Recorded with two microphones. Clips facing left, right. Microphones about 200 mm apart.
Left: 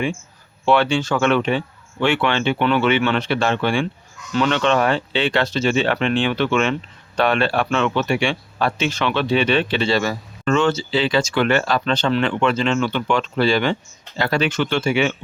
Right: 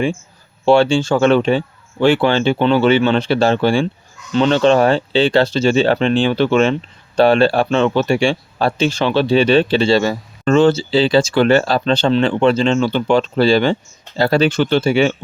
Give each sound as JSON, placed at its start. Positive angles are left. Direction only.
{"t": 0.6, "sound": "speech", "side_deg": -30}